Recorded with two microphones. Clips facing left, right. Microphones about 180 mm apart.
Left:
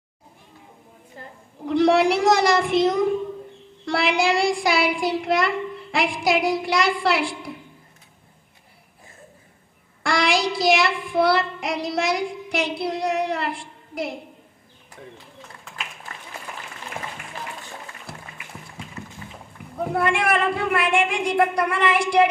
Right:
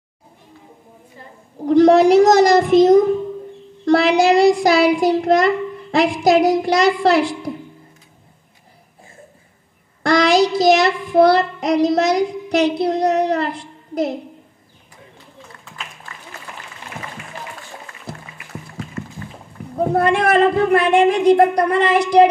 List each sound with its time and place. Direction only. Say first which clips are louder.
1.7 s a child's voice: right 7 dB; 40° right (ahead or behind)
10.0 s child singing: right 8 dB; 45° right (ahead or behind)
12.8 s a child's voice: right 7 dB; 45° right (ahead or behind)
19.7 s a woman's voice: right 6 dB; 40° right (ahead or behind)